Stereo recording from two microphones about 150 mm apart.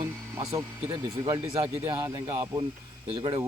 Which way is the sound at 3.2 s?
30° right (ahead or behind).